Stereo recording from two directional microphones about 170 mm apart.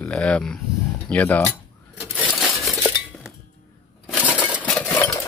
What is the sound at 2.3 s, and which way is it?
Crumpling, 10° left (ahead or behind).